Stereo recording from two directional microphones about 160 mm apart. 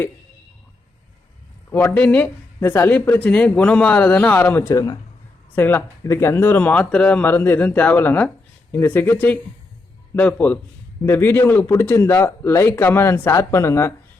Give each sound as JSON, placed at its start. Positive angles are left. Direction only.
{"t": 1.7, "sound": "speech", "side_deg": 10}